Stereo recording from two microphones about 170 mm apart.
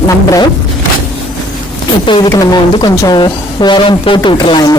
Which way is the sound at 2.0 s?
30° left (ahead or behind).